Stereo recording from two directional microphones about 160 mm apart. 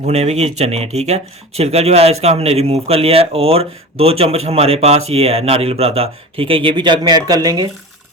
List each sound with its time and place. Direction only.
0.0 s speech: 40° right (ahead or behind); by 7.7 s 25° right (ahead or behind)